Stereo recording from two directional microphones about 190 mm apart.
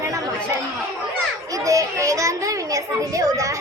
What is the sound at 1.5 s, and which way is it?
A child's voice, 15° right (ahead or behind).